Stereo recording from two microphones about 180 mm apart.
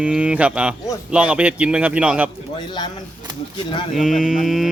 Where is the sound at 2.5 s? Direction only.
25° left (ahead or behind).